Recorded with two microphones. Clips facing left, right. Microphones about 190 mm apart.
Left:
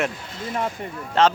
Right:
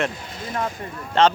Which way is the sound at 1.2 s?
5° left (ahead or behind).